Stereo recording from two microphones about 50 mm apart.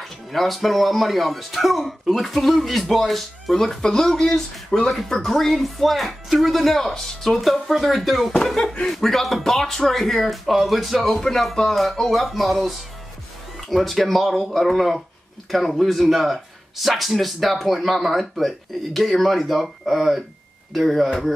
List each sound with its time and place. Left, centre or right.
0.0 s speech: centre